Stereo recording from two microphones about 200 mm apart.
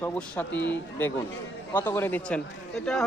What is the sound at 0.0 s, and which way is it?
Speech, 10° left (ahead or behind).